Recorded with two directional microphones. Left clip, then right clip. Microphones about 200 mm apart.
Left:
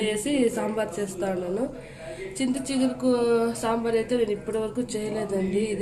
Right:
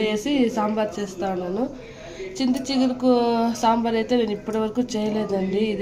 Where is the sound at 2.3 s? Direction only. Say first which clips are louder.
Right 4 dB; 30° right (ahead or behind).